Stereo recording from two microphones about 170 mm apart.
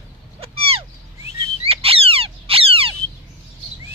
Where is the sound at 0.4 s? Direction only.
35° right (ahead or behind).